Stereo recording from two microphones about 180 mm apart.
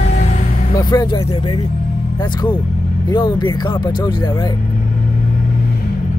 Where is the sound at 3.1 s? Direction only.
25° left (ahead or behind).